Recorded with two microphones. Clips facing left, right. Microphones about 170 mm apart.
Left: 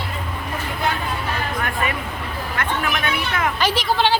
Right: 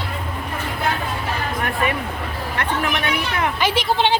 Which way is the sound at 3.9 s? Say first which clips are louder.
Left 1 dB; 20° right (ahead or behind).